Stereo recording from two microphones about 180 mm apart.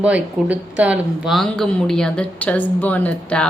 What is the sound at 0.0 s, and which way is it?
Speech, 10° right (ahead or behind).